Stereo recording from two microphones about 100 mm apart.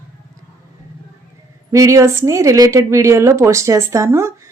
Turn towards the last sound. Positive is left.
turn(degrees=-25)  # may be behind; listen again after turning